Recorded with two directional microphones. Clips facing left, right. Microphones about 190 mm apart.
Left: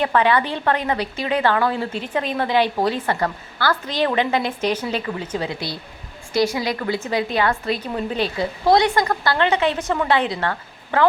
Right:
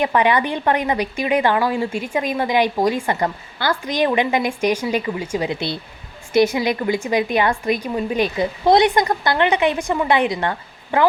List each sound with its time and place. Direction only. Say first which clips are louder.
0.0 s a woman's voice: right 1 dB; 15° right (ahead or behind)